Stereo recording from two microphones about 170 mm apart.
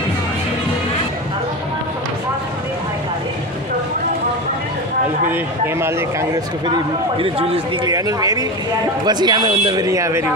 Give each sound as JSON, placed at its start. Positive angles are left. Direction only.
{"t": 5.3, "sound": "a man's voice", "side_deg": -15}
{"t": 7.2, "sound": "speech", "side_deg": -30}
{"t": 7.9, "sound": "speech", "side_deg": -20}